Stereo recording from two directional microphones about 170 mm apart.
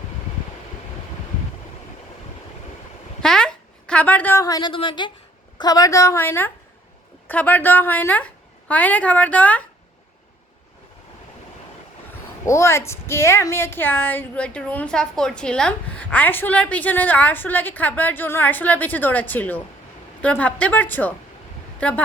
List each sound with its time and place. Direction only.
3.2 s a sound: 5° left (ahead or behind); by 5.1 s 30° left (ahead or behind)
5.5 s a woman's voice: 20° left (ahead or behind)
12.5 s a woman's voice: 15° left (ahead or behind)